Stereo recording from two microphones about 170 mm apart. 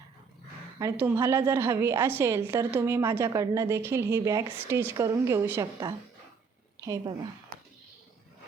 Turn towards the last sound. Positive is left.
turn(degrees=-20)  # may be behind; listen again after turning